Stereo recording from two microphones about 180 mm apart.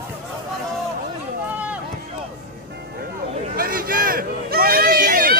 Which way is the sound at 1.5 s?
10° right (ahead or behind).